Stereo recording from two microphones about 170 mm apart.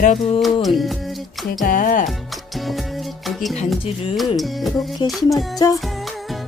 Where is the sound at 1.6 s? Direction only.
55° left (ahead or behind).